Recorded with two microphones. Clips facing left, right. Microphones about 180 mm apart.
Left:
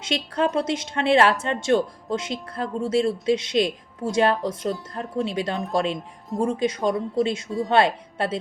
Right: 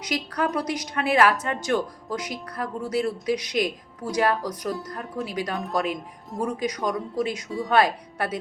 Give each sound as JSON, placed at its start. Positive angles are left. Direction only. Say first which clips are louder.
{"t": 0.0, "sound": "speech", "louder": "left 3 dB", "side_deg": 25}